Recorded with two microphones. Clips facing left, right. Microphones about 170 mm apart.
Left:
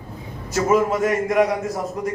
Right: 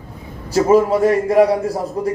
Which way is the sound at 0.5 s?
30° right (ahead or behind).